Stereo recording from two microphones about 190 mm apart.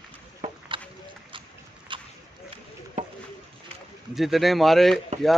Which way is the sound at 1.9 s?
25° right (ahead or behind).